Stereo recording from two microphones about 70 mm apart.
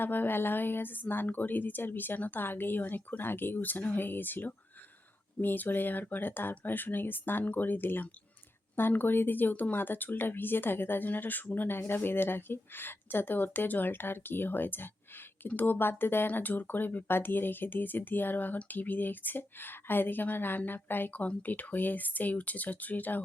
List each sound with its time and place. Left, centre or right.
0.0 s speech: left